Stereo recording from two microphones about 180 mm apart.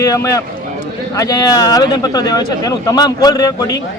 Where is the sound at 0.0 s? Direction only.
15° left (ahead or behind).